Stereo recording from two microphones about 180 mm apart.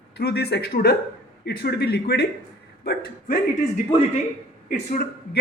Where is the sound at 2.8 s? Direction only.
55° left (ahead or behind).